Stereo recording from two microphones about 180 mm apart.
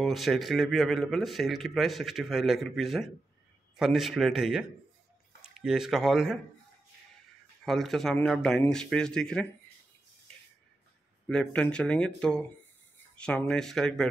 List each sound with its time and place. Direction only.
0.0 s speech: centre (ahead or behind)
7.6 s speech: centre (ahead or behind)
11.2 s speech: 5° left (ahead or behind)